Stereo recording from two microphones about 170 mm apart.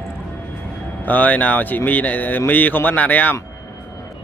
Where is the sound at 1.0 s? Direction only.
10° left (ahead or behind).